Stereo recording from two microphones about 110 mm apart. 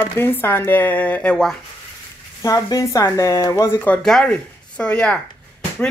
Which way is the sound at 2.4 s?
30° left (ahead or behind).